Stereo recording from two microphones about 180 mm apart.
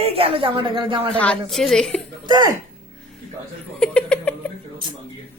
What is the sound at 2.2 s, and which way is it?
Speech, 25° right (ahead or behind).